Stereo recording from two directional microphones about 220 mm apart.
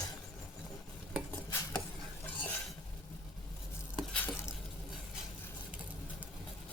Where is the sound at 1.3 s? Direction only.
10° left (ahead or behind).